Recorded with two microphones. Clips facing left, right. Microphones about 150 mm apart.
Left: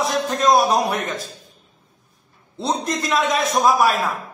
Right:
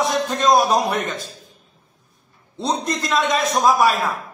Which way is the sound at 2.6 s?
Centre (ahead or behind).